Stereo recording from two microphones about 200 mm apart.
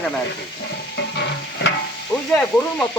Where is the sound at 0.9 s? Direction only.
60° left (ahead or behind).